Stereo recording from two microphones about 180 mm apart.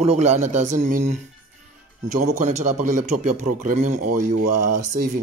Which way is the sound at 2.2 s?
40° right (ahead or behind).